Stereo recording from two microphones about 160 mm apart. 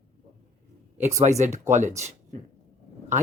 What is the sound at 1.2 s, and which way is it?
Speech, 45° right (ahead or behind).